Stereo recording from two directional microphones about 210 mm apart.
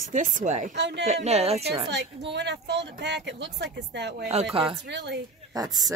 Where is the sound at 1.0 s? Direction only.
35° right (ahead or behind).